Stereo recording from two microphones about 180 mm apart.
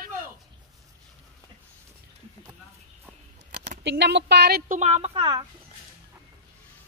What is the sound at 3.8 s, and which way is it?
Speech, 75° right (ahead or behind).